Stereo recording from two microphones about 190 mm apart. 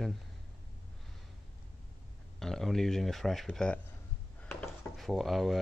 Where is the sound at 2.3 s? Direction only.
Centre (ahead or behind).